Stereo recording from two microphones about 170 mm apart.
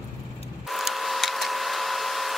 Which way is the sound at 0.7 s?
Centre (ahead or behind).